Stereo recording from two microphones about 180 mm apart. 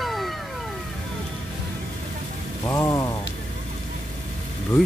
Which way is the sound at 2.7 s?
15° left (ahead or behind).